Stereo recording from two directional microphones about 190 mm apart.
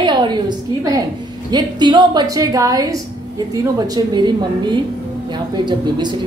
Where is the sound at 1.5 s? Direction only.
20° right (ahead or behind).